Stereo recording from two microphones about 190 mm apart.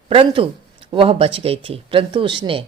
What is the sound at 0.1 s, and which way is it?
A woman's voice, 30° right (ahead or behind).